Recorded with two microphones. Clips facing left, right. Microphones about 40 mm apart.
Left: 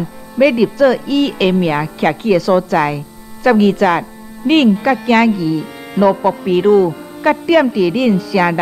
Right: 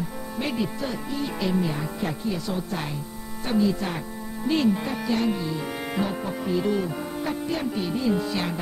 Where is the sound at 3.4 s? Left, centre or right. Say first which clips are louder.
Left 13 dB; left.